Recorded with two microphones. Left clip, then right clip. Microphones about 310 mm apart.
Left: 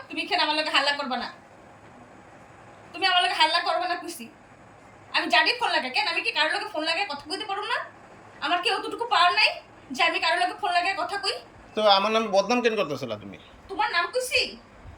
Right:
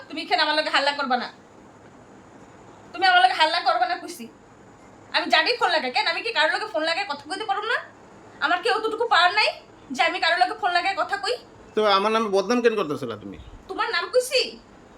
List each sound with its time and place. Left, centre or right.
0.2 s a woman's voice: centre
3.0 s a woman's voice: centre